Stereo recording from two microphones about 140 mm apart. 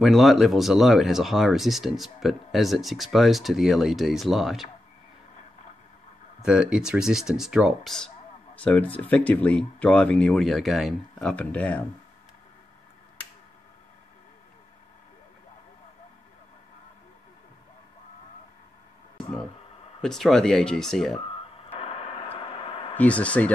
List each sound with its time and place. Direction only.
0.0 s speech: centre (ahead or behind)
6.4 s speech: 5° right (ahead or behind); by 11.8 s 10° left (ahead or behind)
20.0 s speech: 5° left (ahead or behind)
21.3 s radio: 45° left (ahead or behind)
22.9 s speech: 10° left (ahead or behind)